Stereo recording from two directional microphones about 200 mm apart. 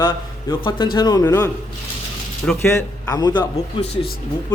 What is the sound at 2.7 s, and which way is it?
Speech, 15° left (ahead or behind).